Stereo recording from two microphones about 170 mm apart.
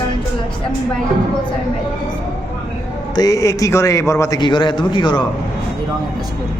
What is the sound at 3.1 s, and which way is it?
A man's voice, 20° left (ahead or behind).